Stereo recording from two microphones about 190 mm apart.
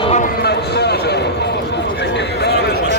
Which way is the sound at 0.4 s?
60° left (ahead or behind).